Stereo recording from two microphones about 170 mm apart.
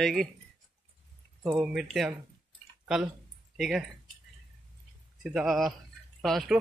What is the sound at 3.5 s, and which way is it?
Speech, centre (ahead or behind).